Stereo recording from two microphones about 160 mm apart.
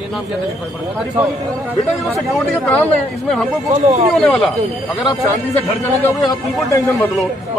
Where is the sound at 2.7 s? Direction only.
5° left (ahead or behind).